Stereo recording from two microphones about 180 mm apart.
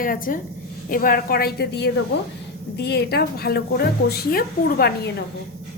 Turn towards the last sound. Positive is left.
turn(degrees=60)  # may be behind; listen again after turning